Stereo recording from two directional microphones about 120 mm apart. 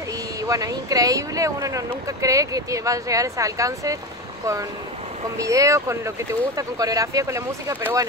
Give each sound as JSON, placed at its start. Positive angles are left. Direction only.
{"t": 0.4, "sound": "speech", "side_deg": -30}
{"t": 5.4, "sound": "speech", "side_deg": -25}